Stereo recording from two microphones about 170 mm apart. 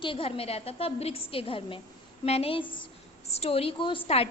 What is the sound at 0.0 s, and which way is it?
A woman's voice, 30° left (ahead or behind).